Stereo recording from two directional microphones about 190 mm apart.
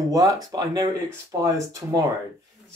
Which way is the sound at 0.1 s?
20° right (ahead or behind).